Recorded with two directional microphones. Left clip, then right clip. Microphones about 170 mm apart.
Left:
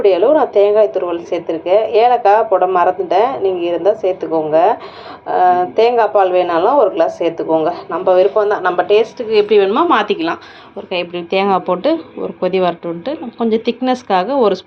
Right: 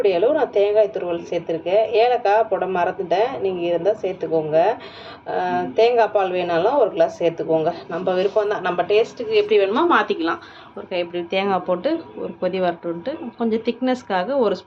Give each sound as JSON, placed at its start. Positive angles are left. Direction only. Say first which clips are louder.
{"t": 0.0, "sound": "a woman's voice", "louder": "left 7 dB", "side_deg": 10}